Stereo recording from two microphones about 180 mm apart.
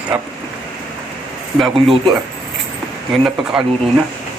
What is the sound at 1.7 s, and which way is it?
Speech, 30° right (ahead or behind).